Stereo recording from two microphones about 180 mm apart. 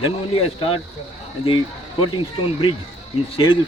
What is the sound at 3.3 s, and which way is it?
Speech, 30° left (ahead or behind).